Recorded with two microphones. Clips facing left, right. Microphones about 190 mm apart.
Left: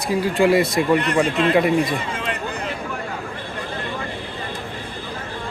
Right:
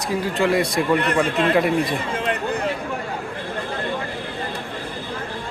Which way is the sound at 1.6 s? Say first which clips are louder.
Left 3 dB; centre (ahead or behind).